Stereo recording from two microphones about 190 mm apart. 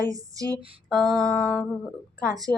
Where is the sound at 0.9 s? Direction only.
Centre (ahead or behind).